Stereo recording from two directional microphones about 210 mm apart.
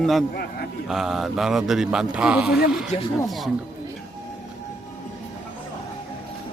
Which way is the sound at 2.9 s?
30° left (ahead or behind).